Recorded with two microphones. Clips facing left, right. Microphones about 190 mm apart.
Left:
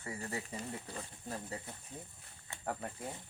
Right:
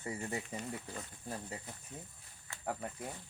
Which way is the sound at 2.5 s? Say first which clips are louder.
Left 2 dB; 20° left (ahead or behind).